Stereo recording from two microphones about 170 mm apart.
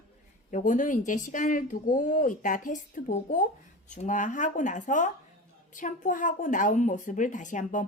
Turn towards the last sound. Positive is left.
turn(degrees=45)  # may be behind; listen again after turning